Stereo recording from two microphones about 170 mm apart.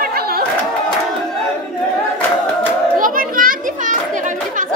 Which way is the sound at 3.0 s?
55° right (ahead or behind).